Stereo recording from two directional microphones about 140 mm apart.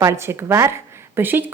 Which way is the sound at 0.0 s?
20° right (ahead or behind).